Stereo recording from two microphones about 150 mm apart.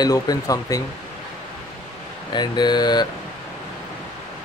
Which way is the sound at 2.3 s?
30° left (ahead or behind).